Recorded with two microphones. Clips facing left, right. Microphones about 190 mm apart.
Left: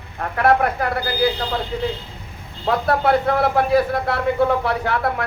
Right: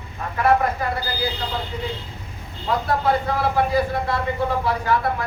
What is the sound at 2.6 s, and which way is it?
Speech, 70° left (ahead or behind).